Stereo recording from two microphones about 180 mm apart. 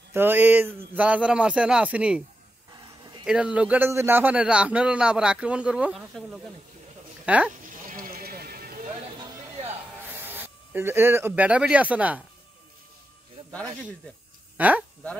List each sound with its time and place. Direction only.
0.1 s speech: 10° right (ahead or behind)
3.3 s a man's voice: 5° right (ahead or behind)
7.6 s a sound: 50° right (ahead or behind)
10.2 s speech: 10° right (ahead or behind)
13.5 s a man's voice: 5° left (ahead or behind)
14.6 s speech: 10° right (ahead or behind)